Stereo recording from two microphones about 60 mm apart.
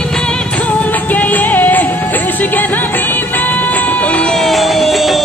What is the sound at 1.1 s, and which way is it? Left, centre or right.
Music, left.